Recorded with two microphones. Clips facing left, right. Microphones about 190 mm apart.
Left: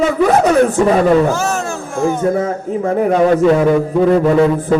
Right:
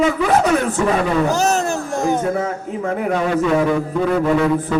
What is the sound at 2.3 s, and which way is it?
Mantra, 35° left (ahead or behind).